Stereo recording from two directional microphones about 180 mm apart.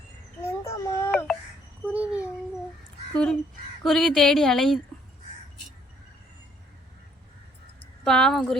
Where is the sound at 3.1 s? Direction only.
5° left (ahead or behind).